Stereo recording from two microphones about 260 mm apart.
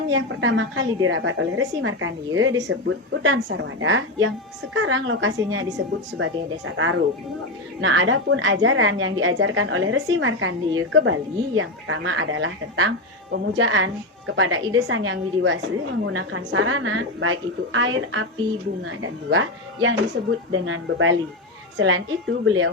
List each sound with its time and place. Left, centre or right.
0.1 s a woman's voice: right